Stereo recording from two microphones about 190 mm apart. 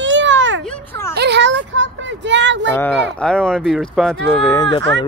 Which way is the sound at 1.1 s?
65° right (ahead or behind).